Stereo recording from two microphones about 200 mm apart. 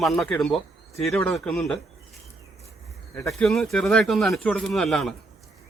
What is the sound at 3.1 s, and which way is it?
Speech, 5° left (ahead or behind).